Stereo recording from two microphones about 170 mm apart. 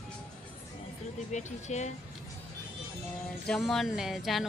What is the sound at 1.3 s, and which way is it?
Speech, 45° left (ahead or behind).